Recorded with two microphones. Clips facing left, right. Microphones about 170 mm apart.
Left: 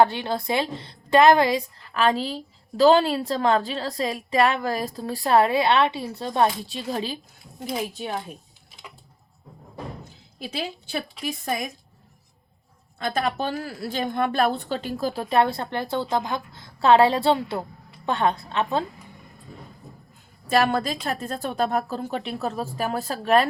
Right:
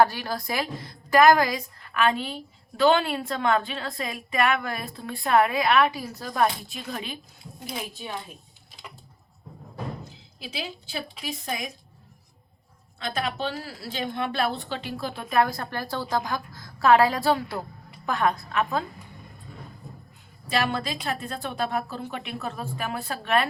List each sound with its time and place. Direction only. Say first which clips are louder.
0.0 s a woman's voice: left 2 dB; 25° left (ahead or behind)
11.2 s a woman's voice: left 5 dB; 50° left (ahead or behind)
13.0 s a woman's voice: left 4 dB; 50° left (ahead or behind); by 18.9 s 30° left (ahead or behind)
20.5 s a woman's voice: left 5 dB; 45° left (ahead or behind)